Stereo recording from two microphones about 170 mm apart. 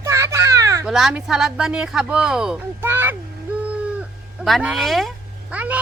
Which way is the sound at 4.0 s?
5° right (ahead or behind).